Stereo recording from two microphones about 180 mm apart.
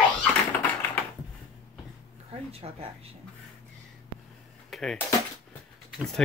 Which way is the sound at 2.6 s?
35° right (ahead or behind).